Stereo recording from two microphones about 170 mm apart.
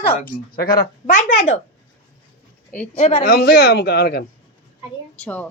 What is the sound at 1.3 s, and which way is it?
Speech, 45° left (ahead or behind).